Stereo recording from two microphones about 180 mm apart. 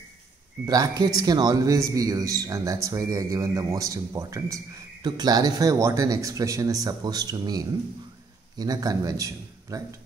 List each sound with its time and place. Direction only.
0.7 s a man's voice: 20° right (ahead or behind)